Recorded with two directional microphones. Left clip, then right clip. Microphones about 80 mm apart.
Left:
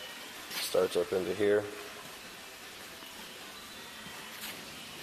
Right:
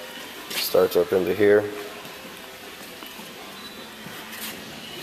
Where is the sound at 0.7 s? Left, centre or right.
Centre.